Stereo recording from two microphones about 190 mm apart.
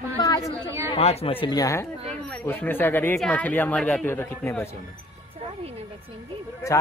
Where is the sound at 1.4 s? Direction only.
20° left (ahead or behind).